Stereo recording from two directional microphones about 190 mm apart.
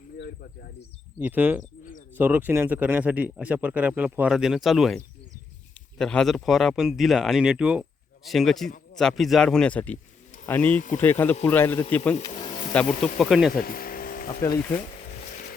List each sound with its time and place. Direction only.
1.2 s speech: 10° right (ahead or behind); by 12.1 s 10° left (ahead or behind)
12.3 s speech: 40° left (ahead or behind)
12.7 s speech: 5° left (ahead or behind)
13.5 s a sound: 50° left (ahead or behind)
14.4 s speech: 15° left (ahead or behind)